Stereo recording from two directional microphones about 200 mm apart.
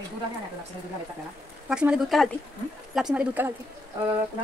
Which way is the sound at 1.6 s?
5° right (ahead or behind).